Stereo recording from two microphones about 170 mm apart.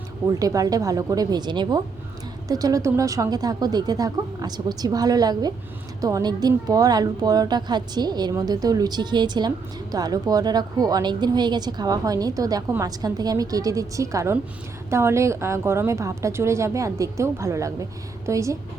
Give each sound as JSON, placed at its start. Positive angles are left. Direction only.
{"t": 0.3, "sound": "a woman's voice", "side_deg": -20}